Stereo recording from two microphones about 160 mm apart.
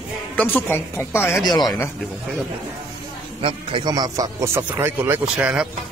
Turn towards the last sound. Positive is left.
turn(degrees=-5)  # may be behind; listen again after turning